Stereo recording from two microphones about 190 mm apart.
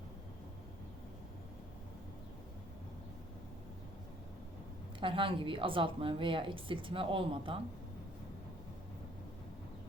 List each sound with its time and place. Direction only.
4.9 s a woman's voice: 25° right (ahead or behind)